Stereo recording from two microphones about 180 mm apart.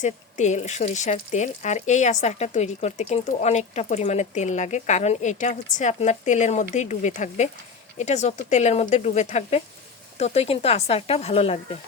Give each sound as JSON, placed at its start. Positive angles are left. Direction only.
{"t": 0.0, "sound": "speech", "side_deg": 40}